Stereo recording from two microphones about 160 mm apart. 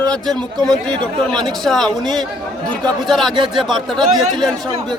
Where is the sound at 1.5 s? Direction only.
Centre (ahead or behind).